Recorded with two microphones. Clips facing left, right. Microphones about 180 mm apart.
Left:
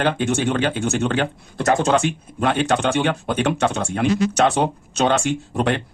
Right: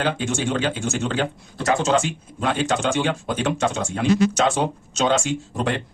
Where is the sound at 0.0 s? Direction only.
60° left (ahead or behind).